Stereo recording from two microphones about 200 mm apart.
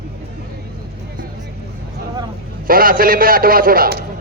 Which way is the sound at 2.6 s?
45° right (ahead or behind).